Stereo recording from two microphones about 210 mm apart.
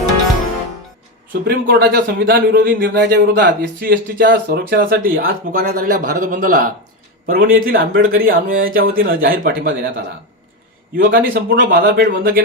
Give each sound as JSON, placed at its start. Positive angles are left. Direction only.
{"t": 1.3, "sound": "speech", "side_deg": -45}
{"t": 10.9, "sound": "speech", "side_deg": -45}